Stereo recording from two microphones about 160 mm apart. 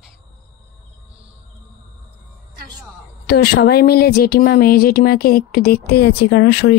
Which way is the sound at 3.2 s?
85° left.